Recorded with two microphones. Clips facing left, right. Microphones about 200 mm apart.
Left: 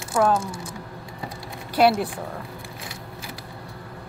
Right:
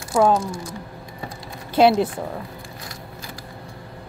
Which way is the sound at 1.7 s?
20° right (ahead or behind).